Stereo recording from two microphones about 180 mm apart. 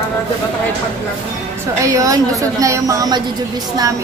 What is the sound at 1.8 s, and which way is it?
A woman's voice, 20° right (ahead or behind).